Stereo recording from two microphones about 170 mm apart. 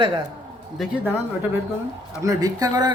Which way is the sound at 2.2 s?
20° right (ahead or behind).